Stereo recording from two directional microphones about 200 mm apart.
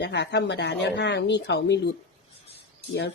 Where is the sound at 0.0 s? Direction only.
60° left (ahead or behind).